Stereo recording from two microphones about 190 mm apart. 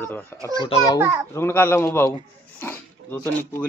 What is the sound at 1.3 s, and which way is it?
Speech, 15° left (ahead or behind).